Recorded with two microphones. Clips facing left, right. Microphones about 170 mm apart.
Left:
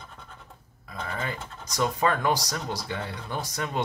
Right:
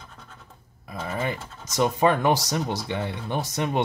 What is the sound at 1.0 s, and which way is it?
Speech, 20° right (ahead or behind).